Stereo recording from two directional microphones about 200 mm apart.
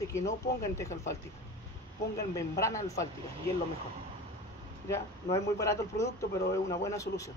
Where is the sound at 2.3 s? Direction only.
15° left (ahead or behind).